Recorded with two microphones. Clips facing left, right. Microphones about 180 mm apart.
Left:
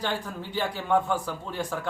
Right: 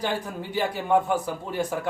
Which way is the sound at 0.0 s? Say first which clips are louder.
Right 2 dB; 15° right (ahead or behind).